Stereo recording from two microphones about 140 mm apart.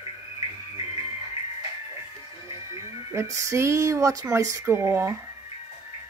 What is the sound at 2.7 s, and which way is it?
Speech, 20° right (ahead or behind).